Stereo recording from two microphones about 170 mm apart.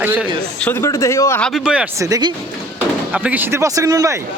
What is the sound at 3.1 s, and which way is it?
Speech, 10° right (ahead or behind).